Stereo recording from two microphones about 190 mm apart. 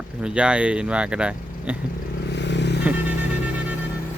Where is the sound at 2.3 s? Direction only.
65° left (ahead or behind).